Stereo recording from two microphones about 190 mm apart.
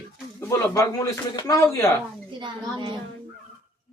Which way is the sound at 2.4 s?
25° right (ahead or behind).